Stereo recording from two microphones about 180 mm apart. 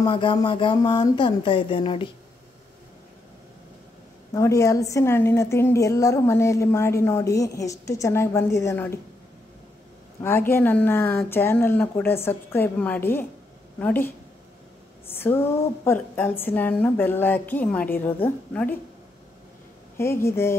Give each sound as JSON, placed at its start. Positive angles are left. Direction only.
{"t": 0.0, "sound": "a sound", "side_deg": 25}
{"t": 4.3, "sound": "a woman's voice", "side_deg": 20}
{"t": 10.5, "sound": "a woman's voice", "side_deg": 10}
{"t": 20.0, "sound": "a woman's voice", "side_deg": 15}